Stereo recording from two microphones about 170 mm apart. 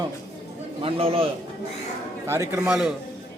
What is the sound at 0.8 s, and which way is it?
Speech, 35° right (ahead or behind).